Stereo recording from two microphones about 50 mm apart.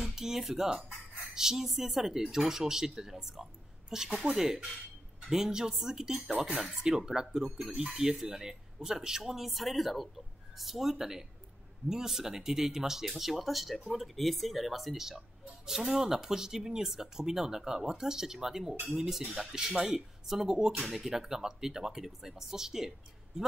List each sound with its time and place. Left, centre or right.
0.0 s speech: centre
5.3 s speech: centre
6.3 s speech: right
6.6 s speech: centre